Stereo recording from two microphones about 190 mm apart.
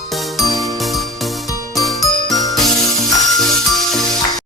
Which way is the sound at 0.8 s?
Centre (ahead or behind).